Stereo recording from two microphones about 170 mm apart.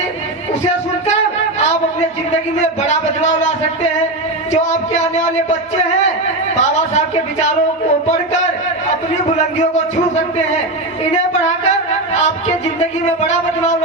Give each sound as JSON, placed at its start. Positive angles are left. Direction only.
{"t": 1.0, "sound": "a sound", "side_deg": 40}
{"t": 4.5, "sound": "speech", "side_deg": 40}
{"t": 12.2, "sound": "speech", "side_deg": 40}